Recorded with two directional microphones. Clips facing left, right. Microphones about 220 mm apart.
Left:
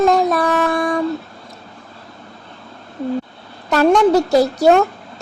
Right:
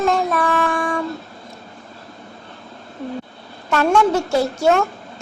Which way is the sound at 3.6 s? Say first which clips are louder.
Left 4 dB; 35° left (ahead or behind).